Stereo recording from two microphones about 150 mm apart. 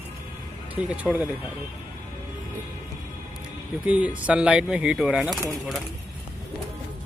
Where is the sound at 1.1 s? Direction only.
Centre (ahead or behind).